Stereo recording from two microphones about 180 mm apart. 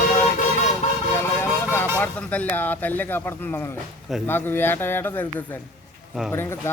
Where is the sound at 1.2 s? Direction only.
10° left (ahead or behind).